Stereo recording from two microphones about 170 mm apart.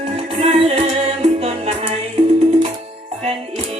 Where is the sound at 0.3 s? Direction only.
35° right (ahead or behind).